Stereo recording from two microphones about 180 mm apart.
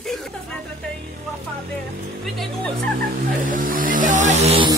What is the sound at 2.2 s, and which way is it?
Speech, centre (ahead or behind).